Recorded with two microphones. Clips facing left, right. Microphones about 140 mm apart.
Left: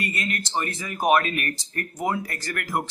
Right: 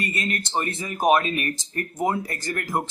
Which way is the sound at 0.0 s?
25° right (ahead or behind).